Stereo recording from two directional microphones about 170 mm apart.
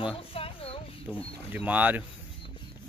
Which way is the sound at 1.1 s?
5° right (ahead or behind).